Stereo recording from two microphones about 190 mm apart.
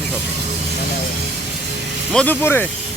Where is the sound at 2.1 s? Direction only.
5° left (ahead or behind).